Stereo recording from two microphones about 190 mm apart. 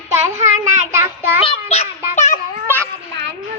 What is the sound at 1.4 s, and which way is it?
Child singing, 35° left (ahead or behind).